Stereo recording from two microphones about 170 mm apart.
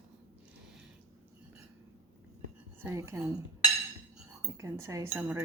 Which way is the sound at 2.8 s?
15° right (ahead or behind).